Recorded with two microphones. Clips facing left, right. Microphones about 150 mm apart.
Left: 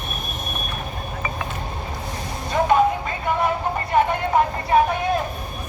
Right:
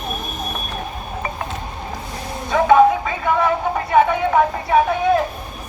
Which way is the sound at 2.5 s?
90° right.